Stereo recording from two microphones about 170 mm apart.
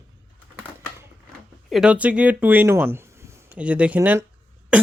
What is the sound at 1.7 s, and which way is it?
Speech, 5° right (ahead or behind).